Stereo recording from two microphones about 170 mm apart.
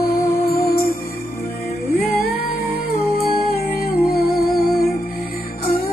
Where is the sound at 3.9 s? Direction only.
65° left (ahead or behind).